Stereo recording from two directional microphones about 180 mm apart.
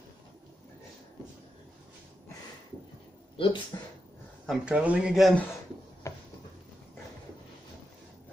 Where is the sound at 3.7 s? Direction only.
20° left (ahead or behind).